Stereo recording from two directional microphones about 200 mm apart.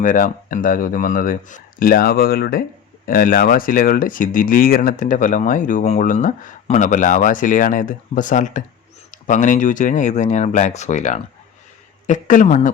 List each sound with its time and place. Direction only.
0.0 s speech: 40° left (ahead or behind)